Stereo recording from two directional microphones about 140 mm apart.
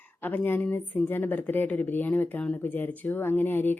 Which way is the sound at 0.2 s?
15° left (ahead or behind).